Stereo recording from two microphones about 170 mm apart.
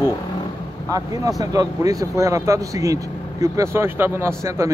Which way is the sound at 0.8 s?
20° right (ahead or behind).